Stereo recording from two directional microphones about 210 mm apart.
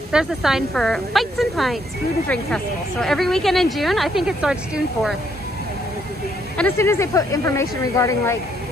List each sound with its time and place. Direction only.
0.1 s speech: centre (ahead or behind)
6.5 s speech: 10° left (ahead or behind)